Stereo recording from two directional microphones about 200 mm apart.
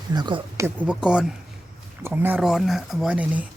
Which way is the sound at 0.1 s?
20° right (ahead or behind).